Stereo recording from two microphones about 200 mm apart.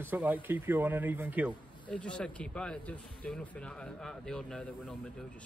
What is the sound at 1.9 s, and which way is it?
Speech, 5° left (ahead or behind).